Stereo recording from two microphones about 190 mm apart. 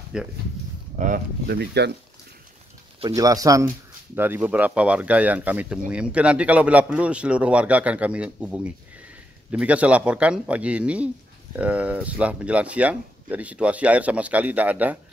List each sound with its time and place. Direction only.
0.1 s speech: 5° right (ahead or behind)
0.9 s speech: 40° right (ahead or behind)
1.5 s speech: 60° right (ahead or behind)
3.2 s speech: 20° right (ahead or behind)